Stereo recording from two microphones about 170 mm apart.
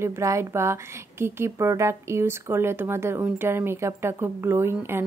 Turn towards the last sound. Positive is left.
turn(degrees=-15)  # may be behind; listen again after turning